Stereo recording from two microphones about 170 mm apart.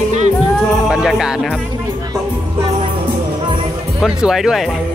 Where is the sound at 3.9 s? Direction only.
5° right (ahead or behind).